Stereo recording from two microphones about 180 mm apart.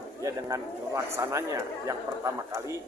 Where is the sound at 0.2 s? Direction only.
20° right (ahead or behind).